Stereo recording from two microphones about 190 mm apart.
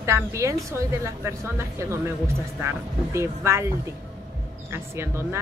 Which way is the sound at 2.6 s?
15° right (ahead or behind).